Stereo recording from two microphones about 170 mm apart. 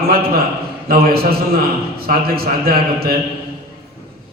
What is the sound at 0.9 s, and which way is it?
A man's voice, 60° right (ahead or behind).